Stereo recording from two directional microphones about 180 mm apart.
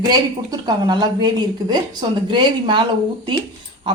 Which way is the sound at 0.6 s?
25° right (ahead or behind).